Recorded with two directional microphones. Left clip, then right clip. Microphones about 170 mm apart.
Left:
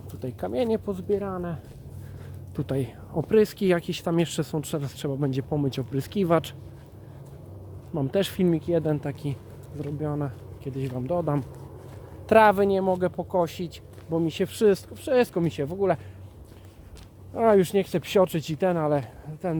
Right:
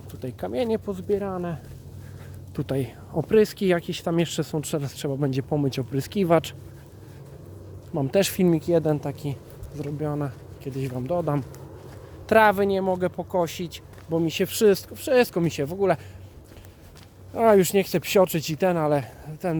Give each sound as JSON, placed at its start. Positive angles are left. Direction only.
{"t": 0.1, "sound": "speech", "side_deg": -5}
{"t": 1.0, "sound": "speech", "side_deg": -20}
{"t": 2.6, "sound": "speech", "side_deg": -15}
{"t": 3.8, "sound": "speech", "side_deg": 0}
{"t": 7.9, "sound": "speech", "side_deg": -15}
{"t": 8.8, "sound": "speech", "side_deg": -10}
{"t": 12.3, "sound": "speech", "side_deg": 0}
{"t": 17.3, "sound": "speech", "side_deg": -20}